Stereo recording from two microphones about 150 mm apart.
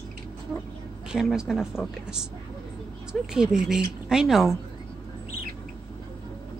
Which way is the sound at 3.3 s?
5° right (ahead or behind).